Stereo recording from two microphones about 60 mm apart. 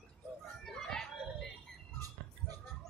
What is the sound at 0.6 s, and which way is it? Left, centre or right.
Children playing, centre.